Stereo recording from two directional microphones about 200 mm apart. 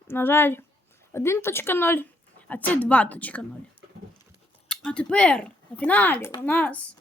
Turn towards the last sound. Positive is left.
turn(degrees=5)  # may be behind; listen again after turning